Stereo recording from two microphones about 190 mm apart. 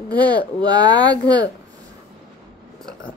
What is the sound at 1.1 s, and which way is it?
Speech, 65° left (ahead or behind).